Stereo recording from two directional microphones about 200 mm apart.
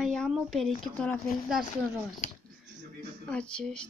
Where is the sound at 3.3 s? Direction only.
5° left (ahead or behind).